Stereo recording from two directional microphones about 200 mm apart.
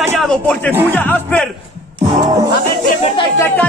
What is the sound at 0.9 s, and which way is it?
Music, 10° left (ahead or behind).